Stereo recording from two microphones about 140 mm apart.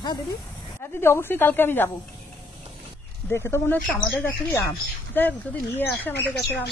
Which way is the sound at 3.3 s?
15° left (ahead or behind).